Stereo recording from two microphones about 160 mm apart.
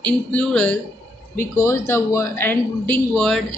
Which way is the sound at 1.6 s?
15° left (ahead or behind).